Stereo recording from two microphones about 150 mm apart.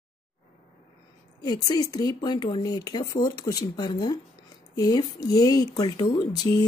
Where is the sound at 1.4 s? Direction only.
25° left (ahead or behind).